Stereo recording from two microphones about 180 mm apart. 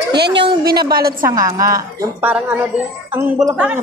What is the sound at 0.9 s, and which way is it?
Speech, 55° right (ahead or behind).